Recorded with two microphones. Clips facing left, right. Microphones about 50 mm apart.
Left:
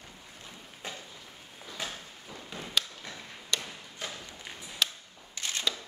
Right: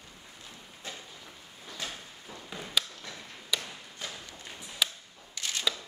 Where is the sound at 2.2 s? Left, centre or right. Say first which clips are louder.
Even; centre.